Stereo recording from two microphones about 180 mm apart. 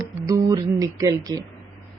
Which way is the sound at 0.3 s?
20° right (ahead or behind).